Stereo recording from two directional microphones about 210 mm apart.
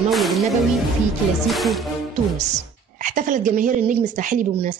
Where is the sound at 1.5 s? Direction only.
Centre (ahead or behind).